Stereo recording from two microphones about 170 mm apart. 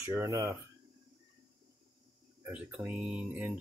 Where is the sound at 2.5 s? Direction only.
5° right (ahead or behind).